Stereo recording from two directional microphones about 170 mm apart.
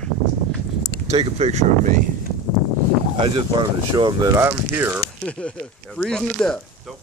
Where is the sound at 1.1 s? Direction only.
35° right (ahead or behind).